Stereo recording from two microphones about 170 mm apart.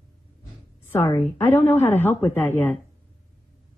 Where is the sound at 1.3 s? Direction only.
10° left (ahead or behind).